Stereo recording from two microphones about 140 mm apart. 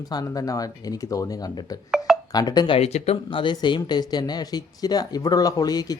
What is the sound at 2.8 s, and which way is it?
Speech, 45° left (ahead or behind).